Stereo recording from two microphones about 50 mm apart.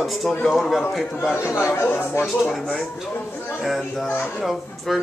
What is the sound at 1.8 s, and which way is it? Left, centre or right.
Speech, left.